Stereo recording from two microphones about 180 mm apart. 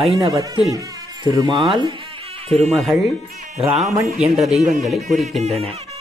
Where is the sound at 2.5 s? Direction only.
35° right (ahead or behind).